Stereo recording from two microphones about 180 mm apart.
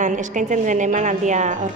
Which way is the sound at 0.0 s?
45° right (ahead or behind).